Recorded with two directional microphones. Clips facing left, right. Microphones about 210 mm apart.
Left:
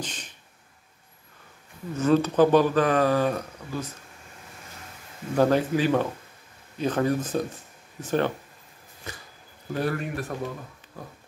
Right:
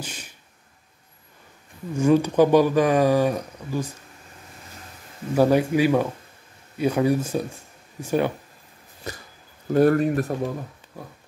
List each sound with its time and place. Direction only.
0.0 s a sound: 10° right (ahead or behind)
2.0 s speech: 10° right (ahead or behind)
5.3 s speech: 10° right (ahead or behind)
9.1 s speech: 40° right (ahead or behind)